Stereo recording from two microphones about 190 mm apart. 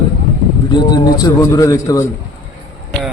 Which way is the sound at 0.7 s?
20° left (ahead or behind).